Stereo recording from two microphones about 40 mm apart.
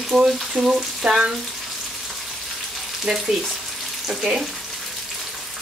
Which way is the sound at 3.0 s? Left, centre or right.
Centre.